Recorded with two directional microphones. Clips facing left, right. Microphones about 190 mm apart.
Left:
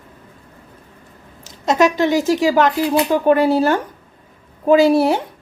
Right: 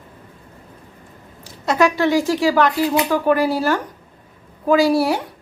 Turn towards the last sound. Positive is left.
turn(degrees=25)  # may be behind; listen again after turning